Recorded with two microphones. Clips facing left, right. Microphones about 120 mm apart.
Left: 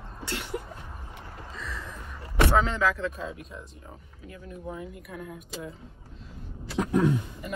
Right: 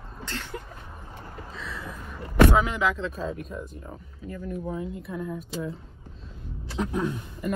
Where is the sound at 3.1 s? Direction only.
40° right (ahead or behind).